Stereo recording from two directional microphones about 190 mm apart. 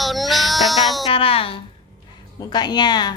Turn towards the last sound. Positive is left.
turn(degrees=20)  # may be behind; listen again after turning